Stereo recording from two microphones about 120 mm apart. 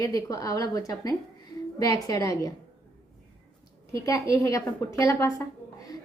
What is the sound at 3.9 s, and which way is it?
A woman's voice, 25° left (ahead or behind).